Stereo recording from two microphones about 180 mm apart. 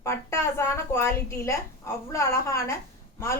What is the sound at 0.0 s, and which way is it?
A woman's voice, 15° left (ahead or behind).